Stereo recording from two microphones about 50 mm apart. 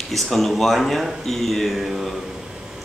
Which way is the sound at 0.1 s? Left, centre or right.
Centre.